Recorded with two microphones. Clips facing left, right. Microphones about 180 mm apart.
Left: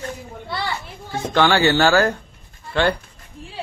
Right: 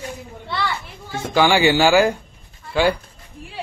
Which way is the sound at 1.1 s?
10° right (ahead or behind).